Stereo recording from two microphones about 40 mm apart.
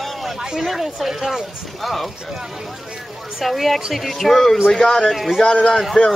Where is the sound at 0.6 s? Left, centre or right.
Centre.